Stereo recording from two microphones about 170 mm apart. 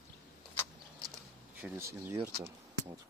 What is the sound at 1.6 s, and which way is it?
Speech, 15° right (ahead or behind).